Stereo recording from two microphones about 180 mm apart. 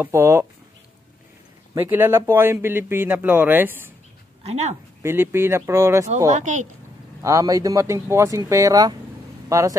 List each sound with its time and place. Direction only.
0.0 s speech: 15° right (ahead or behind)
1.8 s speech: 10° right (ahead or behind)
4.4 s speech: 35° right (ahead or behind)
5.0 s speech: 15° right (ahead or behind)
6.3 s speech: 45° right (ahead or behind)
7.2 s speech: 20° right (ahead or behind)